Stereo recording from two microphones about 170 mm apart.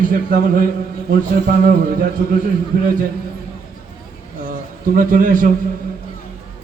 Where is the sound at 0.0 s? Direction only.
55° right (ahead or behind).